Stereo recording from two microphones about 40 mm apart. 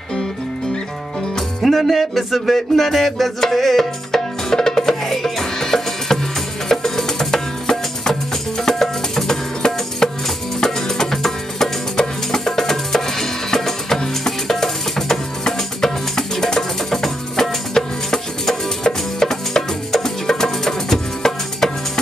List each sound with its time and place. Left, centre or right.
1.6 s music: centre